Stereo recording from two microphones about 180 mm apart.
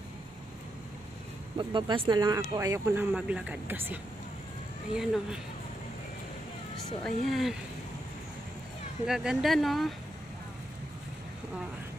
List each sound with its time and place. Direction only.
1.6 s speech: 25° right (ahead or behind); by 5.4 s 5° right (ahead or behind)
7.0 s speech: centre (ahead or behind)
9.0 s speech: 5° right (ahead or behind)